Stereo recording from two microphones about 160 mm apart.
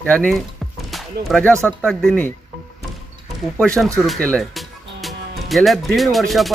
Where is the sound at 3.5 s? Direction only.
5° left (ahead or behind).